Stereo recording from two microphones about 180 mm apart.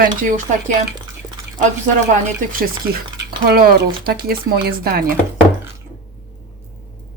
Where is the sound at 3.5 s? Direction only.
55° right (ahead or behind).